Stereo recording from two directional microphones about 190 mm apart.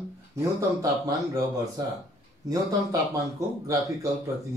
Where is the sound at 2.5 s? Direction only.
20° right (ahead or behind).